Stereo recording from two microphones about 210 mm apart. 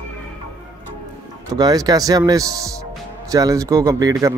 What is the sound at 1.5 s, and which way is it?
Speech, 20° right (ahead or behind).